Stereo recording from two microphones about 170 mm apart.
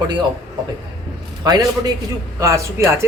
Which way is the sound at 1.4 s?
25° right (ahead or behind).